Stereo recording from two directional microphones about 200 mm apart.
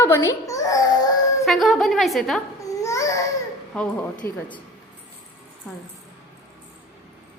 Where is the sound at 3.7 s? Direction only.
5° left (ahead or behind).